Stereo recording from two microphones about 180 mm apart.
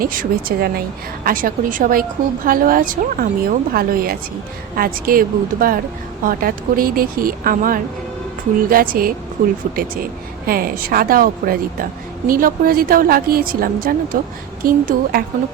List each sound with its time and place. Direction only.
0.0 s a woman's voice: 50° right (ahead or behind)